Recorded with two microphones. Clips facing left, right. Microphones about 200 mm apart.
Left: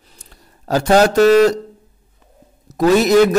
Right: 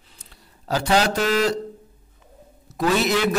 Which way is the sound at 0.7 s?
45° left (ahead or behind).